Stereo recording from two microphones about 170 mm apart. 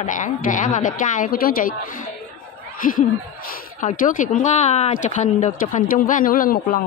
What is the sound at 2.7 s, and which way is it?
Snicker, 55° left (ahead or behind).